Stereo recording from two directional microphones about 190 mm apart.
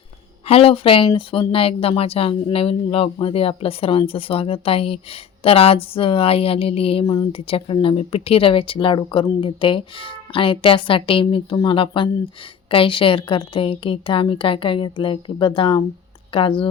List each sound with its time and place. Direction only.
0.4 s a woman's voice: 30° left (ahead or behind)